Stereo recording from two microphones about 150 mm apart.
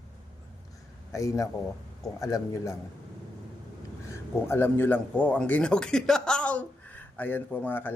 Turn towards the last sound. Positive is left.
turn(degrees=15)  # may be behind; listen again after turning